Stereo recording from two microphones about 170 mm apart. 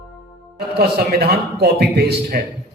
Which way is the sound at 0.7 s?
70° right (ahead or behind).